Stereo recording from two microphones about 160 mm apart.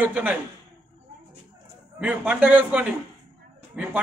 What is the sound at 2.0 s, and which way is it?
A man's voice, 10° right (ahead or behind).